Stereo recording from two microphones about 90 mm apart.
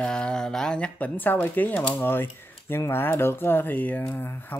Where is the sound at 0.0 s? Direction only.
10° left (ahead or behind).